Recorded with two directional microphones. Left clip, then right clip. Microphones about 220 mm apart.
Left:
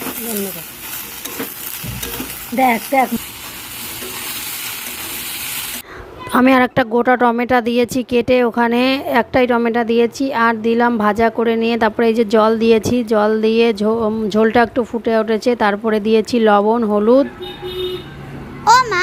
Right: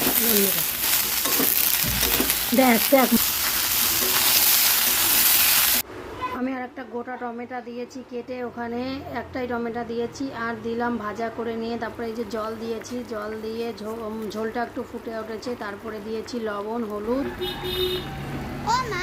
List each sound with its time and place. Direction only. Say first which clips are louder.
2.6 s speech: left 5 dB; 5° left (ahead or behind)
6.3 s a woman's voice: left 18 dB; 45° left (ahead or behind)
18.6 s a sound: left 13 dB; 35° left (ahead or behind)